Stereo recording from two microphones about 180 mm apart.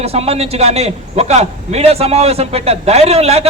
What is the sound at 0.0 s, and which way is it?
A man's voice, 35° right (ahead or behind).